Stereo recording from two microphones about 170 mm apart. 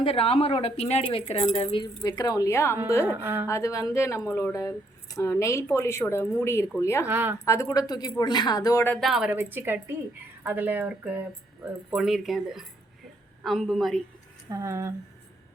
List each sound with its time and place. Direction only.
0.0 s a woman's voice: 35° left (ahead or behind); by 2.7 s 15° left (ahead or behind)
3.0 s speech: 10° right (ahead or behind)
3.4 s speech: 20° left (ahead or behind)
7.0 s speech: 10° right (ahead or behind)
7.4 s a woman's voice: 15° left (ahead or behind)
8.9 s speech: centre (ahead or behind)
14.5 s speech: 15° right (ahead or behind)